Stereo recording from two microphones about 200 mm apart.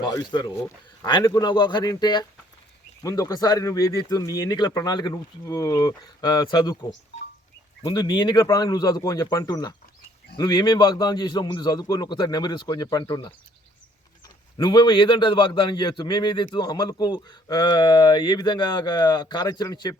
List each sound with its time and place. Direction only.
0.0 s a man's voice: 20° left (ahead or behind)
7.9 s a man's voice: 20° left (ahead or behind)
14.6 s a man's voice: 20° left (ahead or behind)